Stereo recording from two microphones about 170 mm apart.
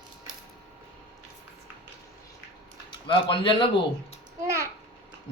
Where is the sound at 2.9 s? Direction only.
30° left (ahead or behind).